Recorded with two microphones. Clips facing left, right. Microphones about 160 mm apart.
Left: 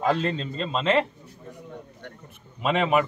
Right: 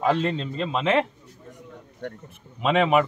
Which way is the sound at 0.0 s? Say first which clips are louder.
Right 1 dB; 10° right (ahead or behind).